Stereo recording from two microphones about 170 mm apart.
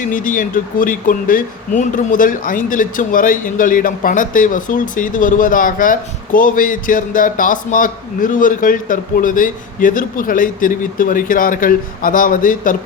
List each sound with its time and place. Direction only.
0.1 s speech: 50° left (ahead or behind)